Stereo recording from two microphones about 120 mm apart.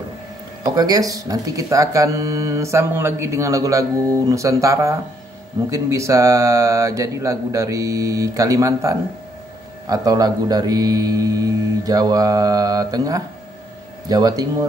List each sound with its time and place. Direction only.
0.7 s speech: 30° right (ahead or behind)